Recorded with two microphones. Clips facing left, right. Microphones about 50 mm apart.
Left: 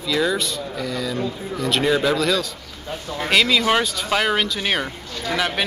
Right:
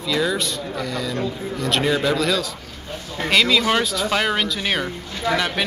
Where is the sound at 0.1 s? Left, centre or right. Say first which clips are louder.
Left 1 dB; centre.